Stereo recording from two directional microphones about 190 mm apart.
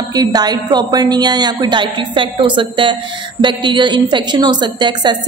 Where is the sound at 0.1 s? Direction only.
20° right (ahead or behind).